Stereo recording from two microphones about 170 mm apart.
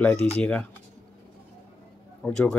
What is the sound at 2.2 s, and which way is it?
Speech, 5° left (ahead or behind).